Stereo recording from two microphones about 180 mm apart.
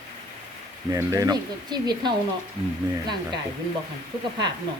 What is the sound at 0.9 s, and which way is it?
A man's voice, 20° right (ahead or behind).